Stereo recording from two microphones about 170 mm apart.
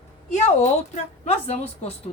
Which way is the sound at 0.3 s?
45° left (ahead or behind).